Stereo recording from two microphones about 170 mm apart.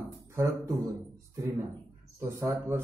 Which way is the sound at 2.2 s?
20° right (ahead or behind).